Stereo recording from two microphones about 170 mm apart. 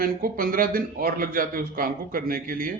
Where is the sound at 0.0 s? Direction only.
55° right (ahead or behind).